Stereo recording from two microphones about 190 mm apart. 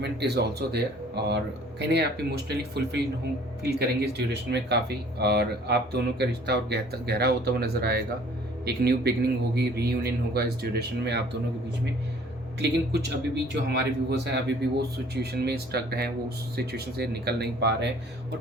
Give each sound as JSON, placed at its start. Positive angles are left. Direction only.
{"t": 0.0, "sound": "speech", "side_deg": -60}
{"t": 12.5, "sound": "speech", "side_deg": -60}